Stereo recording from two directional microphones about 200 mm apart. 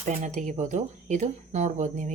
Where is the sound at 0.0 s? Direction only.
35° right (ahead or behind).